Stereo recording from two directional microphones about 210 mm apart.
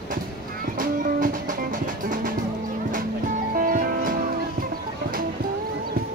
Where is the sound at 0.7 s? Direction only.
40° right (ahead or behind).